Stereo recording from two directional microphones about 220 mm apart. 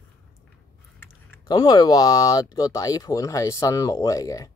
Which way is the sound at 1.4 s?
20° left (ahead or behind).